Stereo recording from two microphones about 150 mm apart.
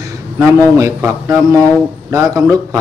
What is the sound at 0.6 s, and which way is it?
A man's voice, 20° right (ahead or behind).